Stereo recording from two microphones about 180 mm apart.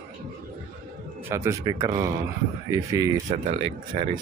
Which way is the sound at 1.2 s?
15° right (ahead or behind).